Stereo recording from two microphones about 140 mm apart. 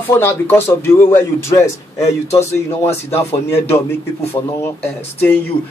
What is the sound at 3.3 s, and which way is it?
Speech, 15° left (ahead or behind).